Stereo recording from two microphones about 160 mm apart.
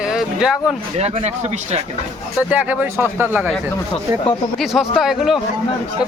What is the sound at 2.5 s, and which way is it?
A man's voice, 10° right (ahead or behind).